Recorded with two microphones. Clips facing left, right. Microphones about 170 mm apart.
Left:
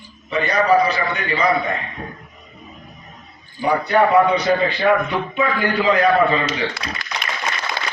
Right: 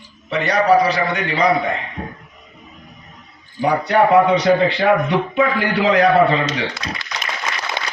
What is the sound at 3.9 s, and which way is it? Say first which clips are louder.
A man's voice: right 2 dB; 85° right.